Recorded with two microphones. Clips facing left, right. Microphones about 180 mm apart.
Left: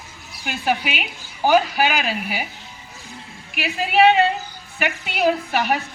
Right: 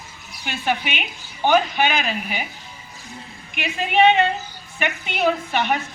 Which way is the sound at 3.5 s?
5° left (ahead or behind).